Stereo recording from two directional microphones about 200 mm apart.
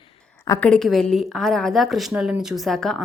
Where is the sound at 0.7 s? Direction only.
Centre (ahead or behind).